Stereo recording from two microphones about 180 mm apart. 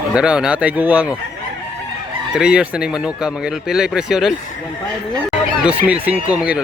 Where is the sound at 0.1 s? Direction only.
5° right (ahead or behind).